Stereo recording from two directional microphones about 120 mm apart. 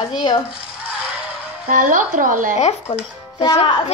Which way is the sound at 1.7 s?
90° right.